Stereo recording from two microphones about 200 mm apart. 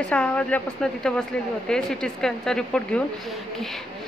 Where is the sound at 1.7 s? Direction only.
5° left (ahead or behind).